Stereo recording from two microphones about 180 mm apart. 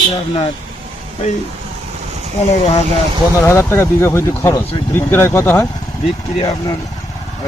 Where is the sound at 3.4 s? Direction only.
15° left (ahead or behind).